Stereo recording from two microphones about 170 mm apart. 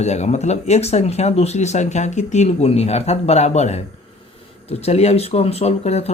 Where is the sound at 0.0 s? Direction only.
40° left (ahead or behind).